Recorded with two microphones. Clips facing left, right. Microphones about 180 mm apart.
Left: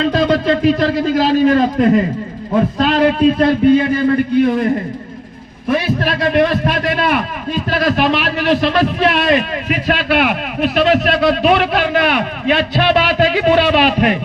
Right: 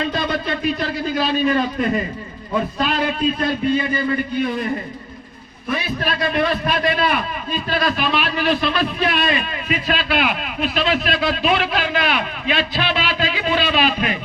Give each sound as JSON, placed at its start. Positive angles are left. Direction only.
{"t": 0.0, "sound": "a man's voice", "side_deg": 85}
{"t": 6.3, "sound": "a man's voice", "side_deg": 80}